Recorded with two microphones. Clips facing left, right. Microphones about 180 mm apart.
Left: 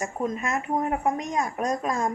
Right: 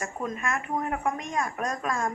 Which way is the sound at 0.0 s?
20° left (ahead or behind).